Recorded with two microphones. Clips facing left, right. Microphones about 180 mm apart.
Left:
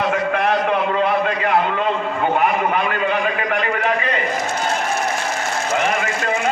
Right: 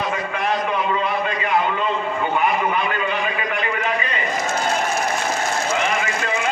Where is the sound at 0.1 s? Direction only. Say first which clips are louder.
Left 5 dB; 65° left (ahead or behind).